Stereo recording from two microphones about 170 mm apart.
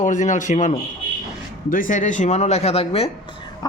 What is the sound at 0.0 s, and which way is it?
Speech, 45° left (ahead or behind).